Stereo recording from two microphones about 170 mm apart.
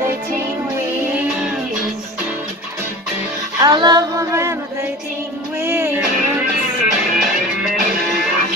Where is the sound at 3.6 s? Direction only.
25° right (ahead or behind).